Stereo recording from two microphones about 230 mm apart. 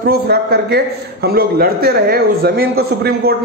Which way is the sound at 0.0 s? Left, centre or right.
Right.